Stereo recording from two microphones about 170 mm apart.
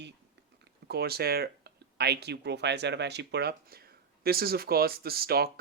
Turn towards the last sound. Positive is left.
turn(degrees=-65)  # may be behind; listen again after turning